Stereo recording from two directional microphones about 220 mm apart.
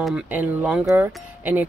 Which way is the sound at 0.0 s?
5° right (ahead or behind).